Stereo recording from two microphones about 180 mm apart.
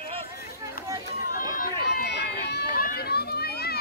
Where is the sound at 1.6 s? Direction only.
60° left (ahead or behind).